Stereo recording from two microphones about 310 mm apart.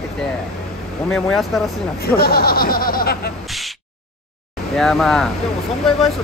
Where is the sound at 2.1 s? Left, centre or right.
Left.